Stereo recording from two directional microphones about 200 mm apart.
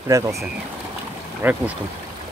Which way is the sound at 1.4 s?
10° right (ahead or behind).